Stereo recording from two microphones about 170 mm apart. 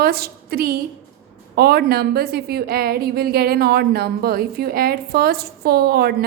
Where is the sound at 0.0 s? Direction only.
65° right (ahead or behind).